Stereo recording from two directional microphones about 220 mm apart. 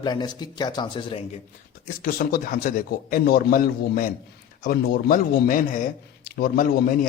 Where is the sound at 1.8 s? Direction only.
40° left (ahead or behind).